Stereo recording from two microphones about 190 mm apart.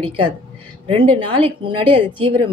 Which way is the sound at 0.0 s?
25° right (ahead or behind).